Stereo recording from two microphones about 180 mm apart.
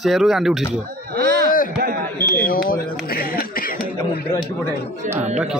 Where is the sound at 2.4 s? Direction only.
55° left (ahead or behind).